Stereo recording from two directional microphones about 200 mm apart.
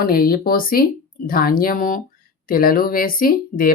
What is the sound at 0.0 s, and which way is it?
Speech, 45° left (ahead or behind).